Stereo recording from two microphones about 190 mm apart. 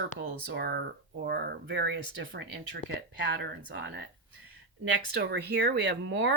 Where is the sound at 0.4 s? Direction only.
60° right (ahead or behind).